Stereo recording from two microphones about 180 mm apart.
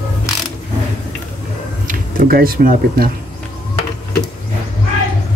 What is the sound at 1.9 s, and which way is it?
Speech, 55° right (ahead or behind).